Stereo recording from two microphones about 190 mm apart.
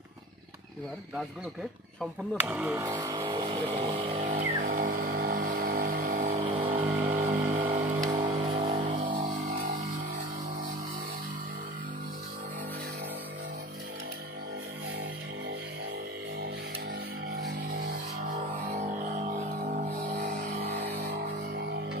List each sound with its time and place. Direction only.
2.4 s speech: 10° right (ahead or behind)
3.2 s vehicle: 25° right (ahead or behind)
4.2 s vehicle: 40° right (ahead or behind)
6.4 s vehicle: 30° right (ahead or behind)
7.1 s vehicle: 40° right (ahead or behind)
18.9 s music: 40° right (ahead or behind)
20.2 s vehicle: 45° right (ahead or behind)